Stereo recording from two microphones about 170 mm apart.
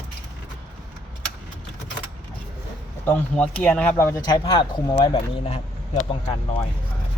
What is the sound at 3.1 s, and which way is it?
Speech, 10° left (ahead or behind).